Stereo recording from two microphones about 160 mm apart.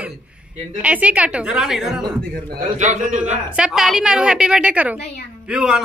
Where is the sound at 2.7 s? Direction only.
50° right (ahead or behind).